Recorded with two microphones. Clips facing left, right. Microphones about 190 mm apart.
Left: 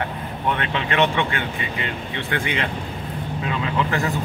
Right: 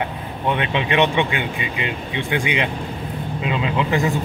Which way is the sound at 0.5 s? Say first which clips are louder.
Right 3 dB; 15° right (ahead or behind).